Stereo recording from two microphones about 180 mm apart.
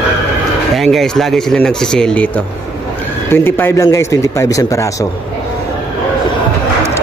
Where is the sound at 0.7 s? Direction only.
Centre (ahead or behind); by 4.8 s 20° left (ahead or behind).